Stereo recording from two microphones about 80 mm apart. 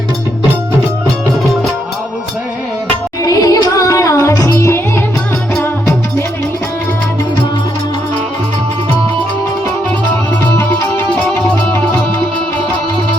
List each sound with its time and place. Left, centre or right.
3.2 s music: left
11.1 s music: centre